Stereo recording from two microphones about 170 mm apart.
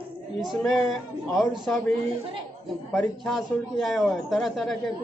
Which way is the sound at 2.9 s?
Centre (ahead or behind).